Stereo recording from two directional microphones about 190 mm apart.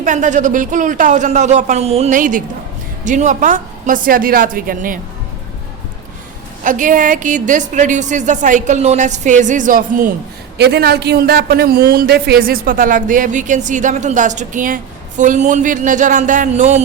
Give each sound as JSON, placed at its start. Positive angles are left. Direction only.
{"t": 0.0, "sound": "a woman's voice", "side_deg": -40}
{"t": 6.7, "sound": "a woman's voice", "side_deg": -45}
{"t": 10.6, "sound": "a woman's voice", "side_deg": -60}